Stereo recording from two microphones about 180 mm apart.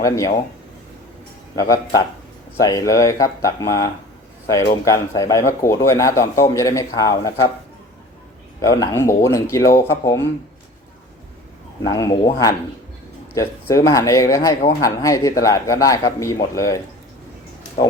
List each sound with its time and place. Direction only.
1.5 s speech: 20° left (ahead or behind)
8.6 s speech: 20° left (ahead or behind)
11.8 s speech: 20° left (ahead or behind)